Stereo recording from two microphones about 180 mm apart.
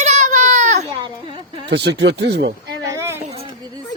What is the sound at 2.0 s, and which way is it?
Speech, 70° right (ahead or behind).